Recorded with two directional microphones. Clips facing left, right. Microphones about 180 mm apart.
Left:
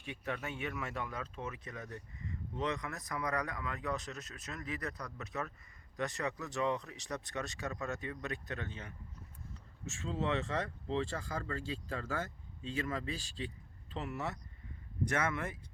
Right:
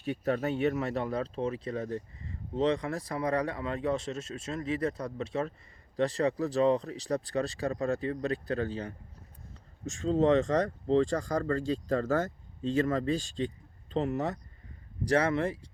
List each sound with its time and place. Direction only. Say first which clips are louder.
0.0 s speech: right 11 dB; 40° right (ahead or behind)